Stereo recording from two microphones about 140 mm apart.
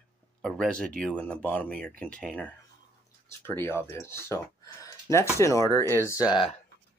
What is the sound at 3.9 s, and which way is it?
Speech, 20° left (ahead or behind).